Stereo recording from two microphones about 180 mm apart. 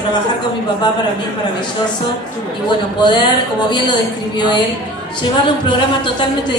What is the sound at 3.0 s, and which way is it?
A woman's voice, 25° left (ahead or behind).